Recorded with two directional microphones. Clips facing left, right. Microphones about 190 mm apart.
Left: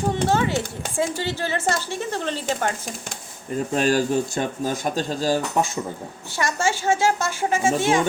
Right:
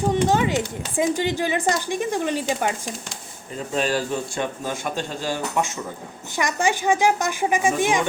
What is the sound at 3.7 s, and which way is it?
Speech, 45° left (ahead or behind).